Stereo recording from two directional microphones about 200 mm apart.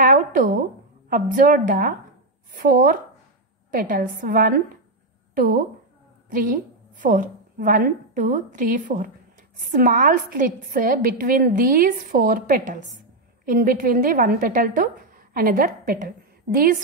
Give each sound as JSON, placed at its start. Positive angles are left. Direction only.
{"t": 0.0, "sound": "a sound", "side_deg": -40}
{"t": 1.1, "sound": "a woman's voice", "side_deg": -45}
{"t": 7.0, "sound": "a woman's voice", "side_deg": -40}